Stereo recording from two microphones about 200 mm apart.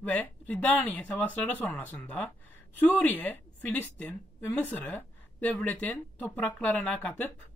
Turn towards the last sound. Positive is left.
turn(degrees=5)  # may be behind; listen again after turning